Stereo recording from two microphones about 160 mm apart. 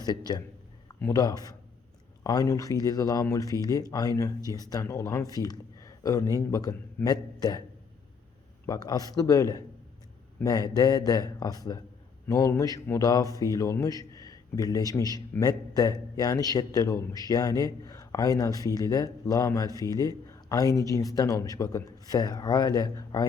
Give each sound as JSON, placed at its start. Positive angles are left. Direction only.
{"t": 0.3, "sound": "a man's voice", "side_deg": 25}
{"t": 8.6, "sound": "a man's voice", "side_deg": 25}